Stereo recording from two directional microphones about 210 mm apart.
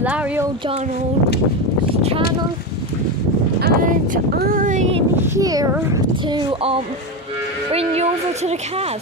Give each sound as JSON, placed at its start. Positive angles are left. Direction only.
{"t": 0.0, "sound": "a sound", "side_deg": -5}
{"t": 3.6, "sound": "speech", "side_deg": -50}
{"t": 5.2, "sound": "speech", "side_deg": -15}